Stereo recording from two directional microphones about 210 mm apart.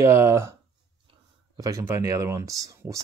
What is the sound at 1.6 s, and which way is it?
Speech, 15° right (ahead or behind).